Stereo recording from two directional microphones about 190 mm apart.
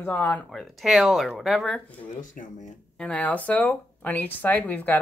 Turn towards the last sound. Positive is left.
turn(degrees=10)  # may be behind; listen again after turning